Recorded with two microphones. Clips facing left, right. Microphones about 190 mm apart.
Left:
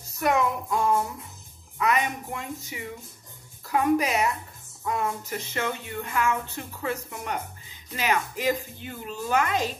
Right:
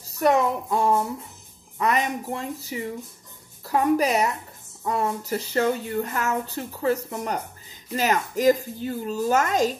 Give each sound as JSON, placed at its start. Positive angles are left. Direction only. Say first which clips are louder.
{"t": 0.2, "sound": "speech", "louder": "right 4 dB", "side_deg": -35}